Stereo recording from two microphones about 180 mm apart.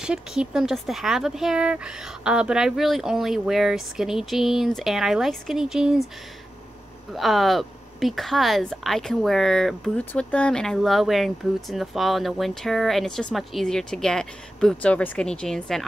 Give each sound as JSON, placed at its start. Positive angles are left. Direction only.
{"t": 0.0, "sound": "speech", "side_deg": -5}
{"t": 7.2, "sound": "speech", "side_deg": 0}